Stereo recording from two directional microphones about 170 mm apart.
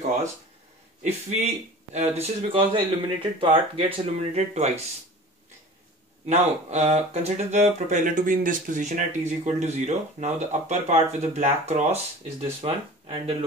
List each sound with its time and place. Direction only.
1.0 s speech: 40° right (ahead or behind)
6.2 s speech: 40° right (ahead or behind)